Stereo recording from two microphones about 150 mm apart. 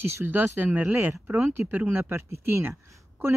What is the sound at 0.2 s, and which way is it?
A man's voice, 15° right (ahead or behind).